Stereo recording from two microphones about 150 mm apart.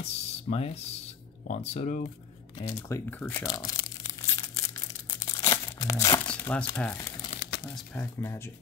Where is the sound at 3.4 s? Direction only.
25° left (ahead or behind).